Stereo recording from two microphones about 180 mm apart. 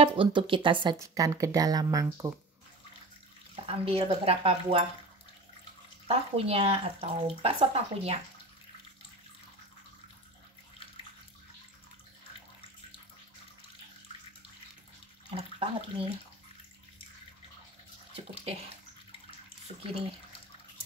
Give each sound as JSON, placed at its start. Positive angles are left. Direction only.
{"t": 0.0, "sound": "speech", "side_deg": -30}
{"t": 3.6, "sound": "speech", "side_deg": -30}
{"t": 6.0, "sound": "speech", "side_deg": -35}
{"t": 15.2, "sound": "speech", "side_deg": -30}
{"t": 19.7, "sound": "speech", "side_deg": -40}